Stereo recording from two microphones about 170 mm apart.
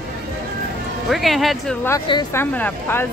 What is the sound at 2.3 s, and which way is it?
Speech, 10° left (ahead or behind).